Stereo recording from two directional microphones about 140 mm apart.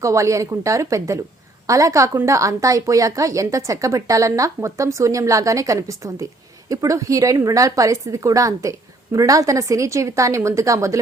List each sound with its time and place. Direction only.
0.0 s a woman's voice: 20° right (ahead or behind)